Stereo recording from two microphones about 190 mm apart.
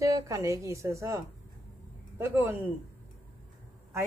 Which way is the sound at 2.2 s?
15° right (ahead or behind).